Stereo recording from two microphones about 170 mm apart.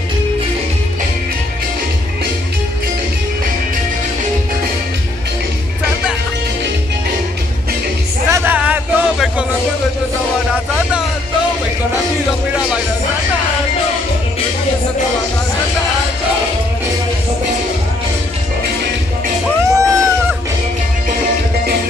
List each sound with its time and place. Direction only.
8.3 s a sound: 10° right (ahead or behind)
12.5 s music: 5° right (ahead or behind)
19.6 s cat: 20° right (ahead or behind)